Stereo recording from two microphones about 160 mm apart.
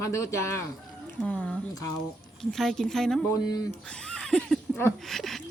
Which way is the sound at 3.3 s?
25° left (ahead or behind).